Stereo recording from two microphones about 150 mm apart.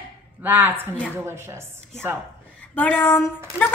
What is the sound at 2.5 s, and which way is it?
Speech, 10° left (ahead or behind).